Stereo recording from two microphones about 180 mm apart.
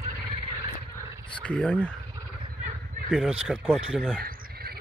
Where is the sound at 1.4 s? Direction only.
5° left (ahead or behind).